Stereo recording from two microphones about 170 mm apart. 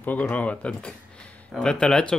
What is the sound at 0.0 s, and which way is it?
Speech, 10° left (ahead or behind).